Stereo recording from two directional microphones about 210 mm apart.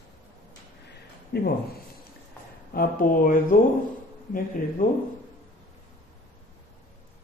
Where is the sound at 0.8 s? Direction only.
50° left (ahead or behind).